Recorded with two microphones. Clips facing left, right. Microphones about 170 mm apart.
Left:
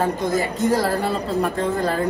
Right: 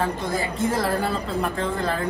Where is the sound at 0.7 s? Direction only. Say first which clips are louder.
Left 3 dB; 30° left (ahead or behind).